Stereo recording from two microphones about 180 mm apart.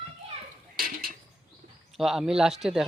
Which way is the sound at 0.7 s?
50° right (ahead or behind).